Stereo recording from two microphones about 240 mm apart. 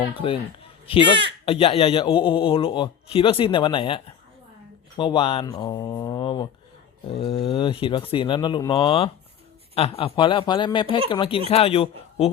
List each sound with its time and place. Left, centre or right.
0.1 s a man's voice: left